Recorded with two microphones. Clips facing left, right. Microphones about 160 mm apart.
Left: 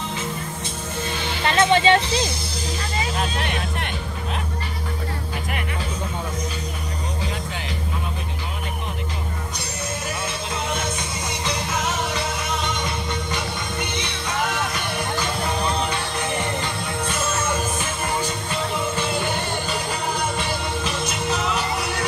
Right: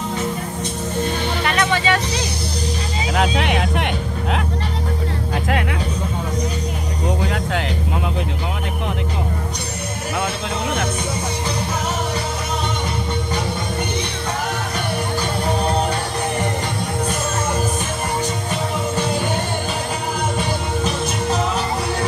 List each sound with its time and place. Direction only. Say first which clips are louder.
1.4 s music: left 4 dB; 30° left (ahead or behind)
3.2 s speech: right 7 dB; 75° right (ahead or behind)